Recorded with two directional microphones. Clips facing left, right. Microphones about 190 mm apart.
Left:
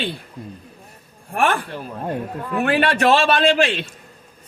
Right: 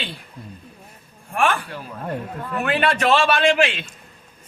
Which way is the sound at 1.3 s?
40° left (ahead or behind).